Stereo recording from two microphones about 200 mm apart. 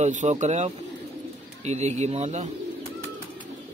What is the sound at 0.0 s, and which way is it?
A man's voice, 35° right (ahead or behind).